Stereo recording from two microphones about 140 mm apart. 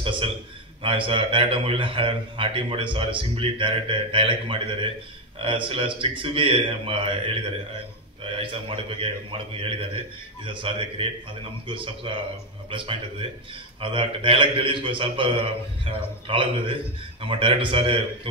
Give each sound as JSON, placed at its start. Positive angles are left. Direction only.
{"t": 0.0, "sound": "a man's voice", "side_deg": -40}
{"t": 5.7, "sound": "a man's voice", "side_deg": -40}